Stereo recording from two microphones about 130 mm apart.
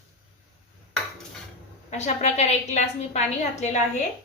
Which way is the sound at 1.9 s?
60° left (ahead or behind).